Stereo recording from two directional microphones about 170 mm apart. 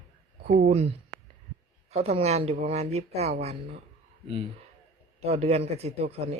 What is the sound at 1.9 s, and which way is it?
Speech, 40° right (ahead or behind).